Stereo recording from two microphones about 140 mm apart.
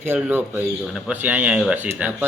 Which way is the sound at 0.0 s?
15° right (ahead or behind).